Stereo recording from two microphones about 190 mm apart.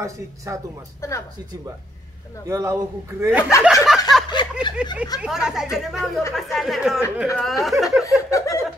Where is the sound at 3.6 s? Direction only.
Centre (ahead or behind).